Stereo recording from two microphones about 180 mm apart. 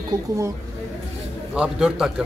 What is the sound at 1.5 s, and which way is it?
Speech, 5° right (ahead or behind).